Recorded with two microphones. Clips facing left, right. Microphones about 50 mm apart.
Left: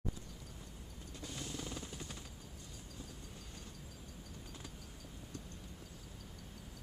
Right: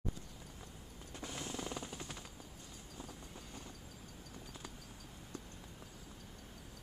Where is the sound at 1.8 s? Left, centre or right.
Centre.